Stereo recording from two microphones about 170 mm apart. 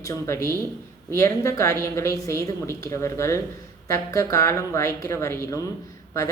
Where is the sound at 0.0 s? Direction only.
15° left (ahead or behind).